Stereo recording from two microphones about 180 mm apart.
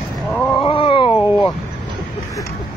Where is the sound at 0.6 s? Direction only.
30° left (ahead or behind).